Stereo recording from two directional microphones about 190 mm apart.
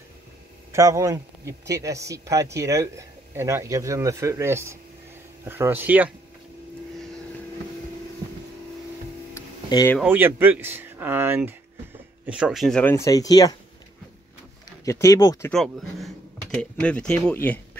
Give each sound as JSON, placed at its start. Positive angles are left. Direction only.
{"t": 0.7, "sound": "speech", "side_deg": -15}
{"t": 9.3, "sound": "music", "side_deg": 15}
{"t": 10.0, "sound": "speech", "side_deg": -10}
{"t": 14.9, "sound": "speech", "side_deg": 15}
{"t": 15.5, "sound": "speech", "side_deg": 0}